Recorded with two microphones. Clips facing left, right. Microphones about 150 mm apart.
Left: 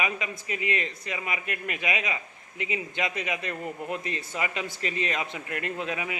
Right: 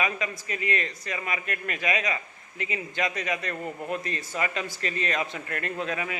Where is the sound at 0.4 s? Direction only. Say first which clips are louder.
Left 2 dB; 15° left (ahead or behind).